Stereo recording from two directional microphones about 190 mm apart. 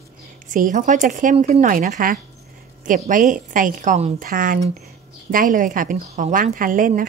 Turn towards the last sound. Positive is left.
turn(degrees=-45)  # may be behind; listen again after turning